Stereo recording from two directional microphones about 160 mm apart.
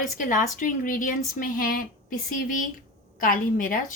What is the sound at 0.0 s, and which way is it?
A woman's voice, 55° left (ahead or behind).